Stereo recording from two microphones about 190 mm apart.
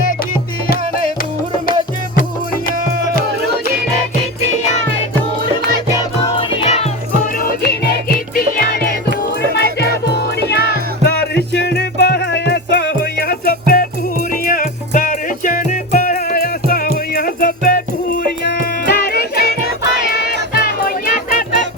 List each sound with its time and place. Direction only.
2.6 s music: 50° left (ahead or behind)
6.3 s music: 35° left (ahead or behind)
7.3 s music: 55° left (ahead or behind)
9.5 s music: 60° left (ahead or behind)